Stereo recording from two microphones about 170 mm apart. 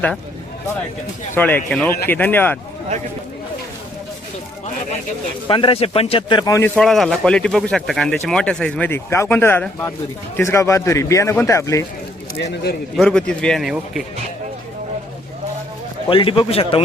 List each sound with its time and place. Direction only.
1.3 s speech: 10° left (ahead or behind)
5.5 s a man's voice: 30° left (ahead or behind)
6.7 s speech: centre (ahead or behind); by 11.9 s 20° left (ahead or behind)
13.0 s speech: 5° left (ahead or behind)
16.0 s a man's voice: 30° left (ahead or behind)